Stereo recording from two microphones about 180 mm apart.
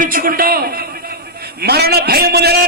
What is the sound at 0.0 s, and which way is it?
A man's voice, 50° right (ahead or behind).